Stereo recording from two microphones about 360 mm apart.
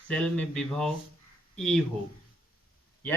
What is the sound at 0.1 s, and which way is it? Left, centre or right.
Speech, centre.